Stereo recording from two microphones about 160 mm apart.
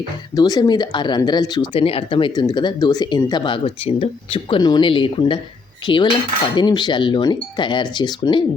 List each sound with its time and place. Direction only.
0.3 s speech: 25° left (ahead or behind)